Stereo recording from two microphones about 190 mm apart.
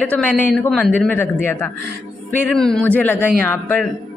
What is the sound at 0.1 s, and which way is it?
A man's voice, 5° left (ahead or behind).